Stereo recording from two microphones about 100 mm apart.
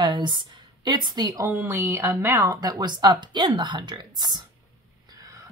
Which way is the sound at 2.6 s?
45° right (ahead or behind).